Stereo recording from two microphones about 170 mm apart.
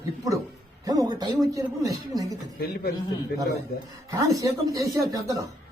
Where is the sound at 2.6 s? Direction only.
65° left (ahead or behind).